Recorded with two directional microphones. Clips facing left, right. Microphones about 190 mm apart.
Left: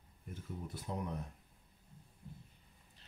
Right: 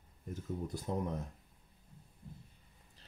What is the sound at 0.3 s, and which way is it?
Speech, 40° right (ahead or behind).